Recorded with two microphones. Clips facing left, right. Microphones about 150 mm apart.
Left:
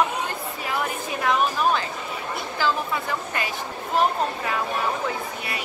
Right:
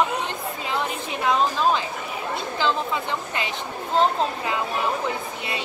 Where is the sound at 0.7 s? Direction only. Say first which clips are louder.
Even; 20° right (ahead or behind).